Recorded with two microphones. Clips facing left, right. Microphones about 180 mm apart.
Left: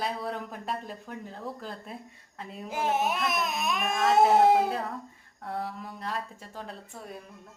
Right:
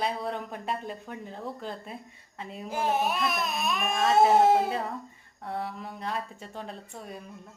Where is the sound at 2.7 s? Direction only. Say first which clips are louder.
Even; 20° left (ahead or behind).